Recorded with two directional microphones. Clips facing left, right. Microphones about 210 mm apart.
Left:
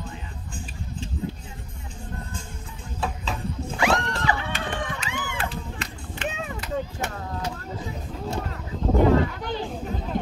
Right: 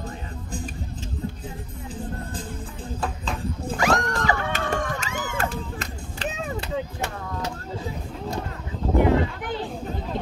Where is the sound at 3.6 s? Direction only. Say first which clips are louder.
Right 1 dB; 40° right (ahead or behind).